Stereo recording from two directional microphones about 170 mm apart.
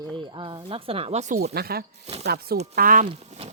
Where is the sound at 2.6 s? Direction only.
65° right (ahead or behind).